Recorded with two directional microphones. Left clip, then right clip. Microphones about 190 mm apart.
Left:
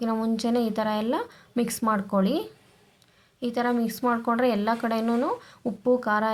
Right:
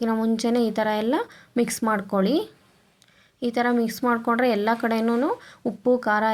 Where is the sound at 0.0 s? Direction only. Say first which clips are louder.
Right 3 dB; 15° right (ahead or behind).